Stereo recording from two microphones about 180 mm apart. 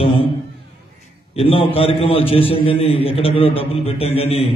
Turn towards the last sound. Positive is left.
turn(degrees=35)  # may be behind; listen again after turning